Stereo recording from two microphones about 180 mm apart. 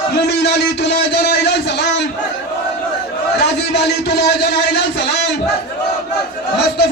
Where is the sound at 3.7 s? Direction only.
65° left (ahead or behind).